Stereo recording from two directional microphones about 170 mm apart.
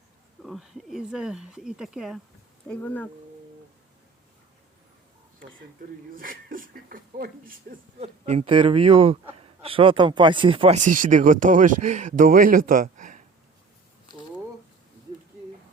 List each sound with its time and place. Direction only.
0.4 s speech: centre (ahead or behind)
2.6 s speech: 10° left (ahead or behind)
5.8 s speech: 55° right (ahead or behind)
7.9 s speech: 35° right (ahead or behind)
10.8 s speech: 50° right (ahead or behind)